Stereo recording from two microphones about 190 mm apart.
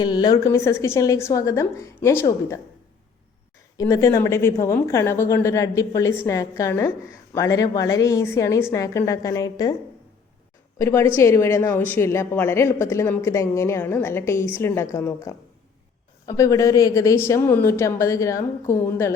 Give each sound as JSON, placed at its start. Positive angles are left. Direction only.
{"t": 0.0, "sound": "a woman's voice", "side_deg": 20}
{"t": 3.8, "sound": "a woman's voice", "side_deg": 15}
{"t": 10.8, "sound": "a woman's voice", "side_deg": 15}